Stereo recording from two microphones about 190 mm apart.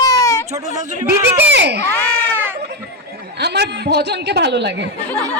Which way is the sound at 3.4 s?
60° right (ahead or behind).